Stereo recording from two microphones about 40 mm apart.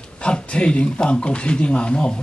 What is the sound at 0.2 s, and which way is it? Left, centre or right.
Speech, left.